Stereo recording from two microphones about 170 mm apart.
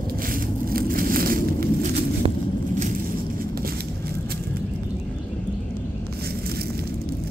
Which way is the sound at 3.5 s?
65° right (ahead or behind).